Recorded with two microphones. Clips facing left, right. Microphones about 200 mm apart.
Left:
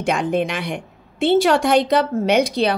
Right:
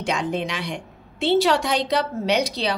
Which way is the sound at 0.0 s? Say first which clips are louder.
Left 5 dB; 55° left (ahead or behind).